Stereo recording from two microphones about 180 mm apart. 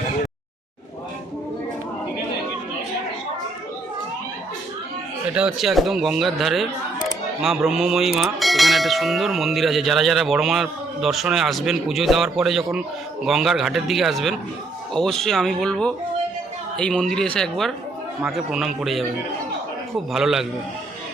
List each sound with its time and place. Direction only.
5.3 s bell: 5° right (ahead or behind)
20.1 s bell: 5° right (ahead or behind)